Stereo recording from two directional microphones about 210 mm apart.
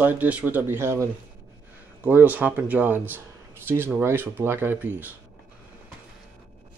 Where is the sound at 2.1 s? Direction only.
10° right (ahead or behind).